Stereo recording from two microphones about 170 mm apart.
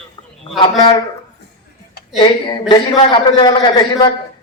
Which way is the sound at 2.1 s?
25° left (ahead or behind).